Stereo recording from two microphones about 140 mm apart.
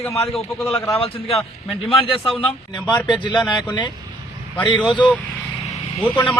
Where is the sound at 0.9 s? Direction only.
45° left (ahead or behind).